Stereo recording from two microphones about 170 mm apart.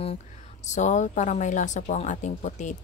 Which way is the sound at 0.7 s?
45° left (ahead or behind).